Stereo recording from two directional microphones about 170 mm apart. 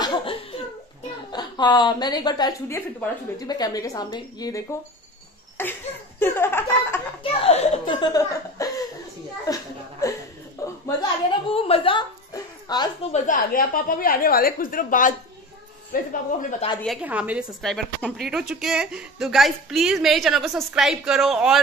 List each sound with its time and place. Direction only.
0.0 s laughter: 30° left (ahead or behind)
1.3 s a woman's voice: 25° left (ahead or behind)
7.4 s speech: 40° left (ahead or behind)
8.0 s a woman's voice: 20° left (ahead or behind)
9.5 s a sound: 20° left (ahead or behind)
11.0 s a sound: 35° left (ahead or behind)
13.1 s a woman's voice: 55° left (ahead or behind)
17.0 s a woman's voice: 10° right (ahead or behind)